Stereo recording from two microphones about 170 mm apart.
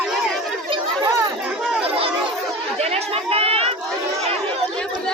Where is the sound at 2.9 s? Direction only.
35° right (ahead or behind).